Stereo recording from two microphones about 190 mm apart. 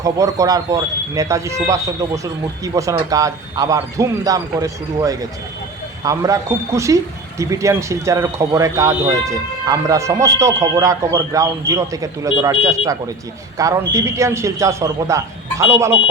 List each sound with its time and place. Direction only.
0.0 s a man's voice: 15° right (ahead or behind)